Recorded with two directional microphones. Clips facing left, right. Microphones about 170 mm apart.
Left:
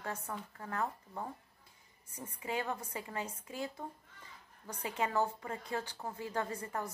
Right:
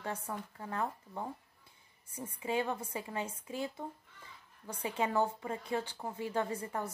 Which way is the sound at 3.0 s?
25° right (ahead or behind).